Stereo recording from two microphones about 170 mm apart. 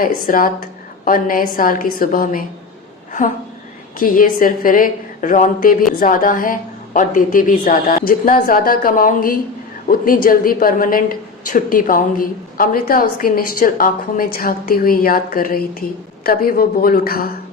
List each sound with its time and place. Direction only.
0.0 s a woman's voice: 55° left (ahead or behind)
3.9 s a woman's voice: 55° left (ahead or behind)